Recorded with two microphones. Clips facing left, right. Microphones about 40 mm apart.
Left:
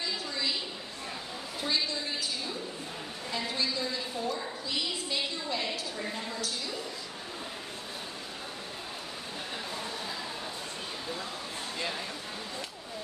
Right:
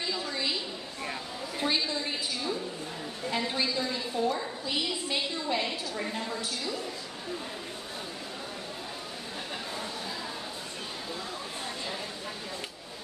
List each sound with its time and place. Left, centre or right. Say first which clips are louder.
1.6 s a woman's voice: right 2 dB; right
3.3 s a woman's voice: right 3 dB; right